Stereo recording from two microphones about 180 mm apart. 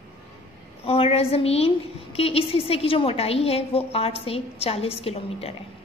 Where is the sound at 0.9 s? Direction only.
35° left (ahead or behind).